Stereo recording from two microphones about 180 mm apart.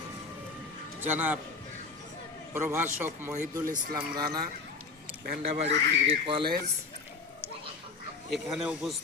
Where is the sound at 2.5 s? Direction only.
15° right (ahead or behind).